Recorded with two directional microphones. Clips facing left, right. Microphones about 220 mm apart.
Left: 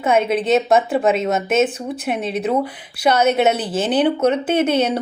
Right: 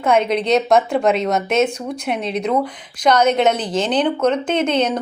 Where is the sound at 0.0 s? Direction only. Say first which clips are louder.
Even; 5° left (ahead or behind).